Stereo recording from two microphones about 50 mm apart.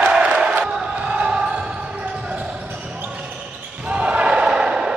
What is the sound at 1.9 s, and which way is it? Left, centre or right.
Basketball bounce, right.